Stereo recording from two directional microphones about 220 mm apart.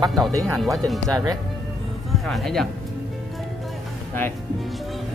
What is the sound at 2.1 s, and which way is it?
Speech, centre (ahead or behind).